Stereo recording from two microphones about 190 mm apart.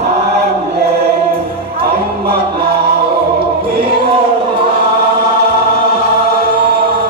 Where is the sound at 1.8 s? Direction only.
55° right (ahead or behind).